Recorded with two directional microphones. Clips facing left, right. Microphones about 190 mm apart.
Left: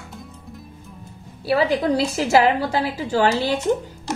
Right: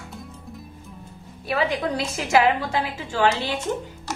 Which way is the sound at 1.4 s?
35° left (ahead or behind).